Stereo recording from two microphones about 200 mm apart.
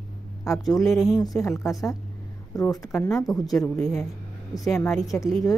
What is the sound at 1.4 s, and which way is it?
Speech, 15° left (ahead or behind).